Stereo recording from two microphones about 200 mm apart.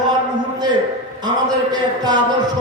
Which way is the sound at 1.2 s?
20° right (ahead or behind).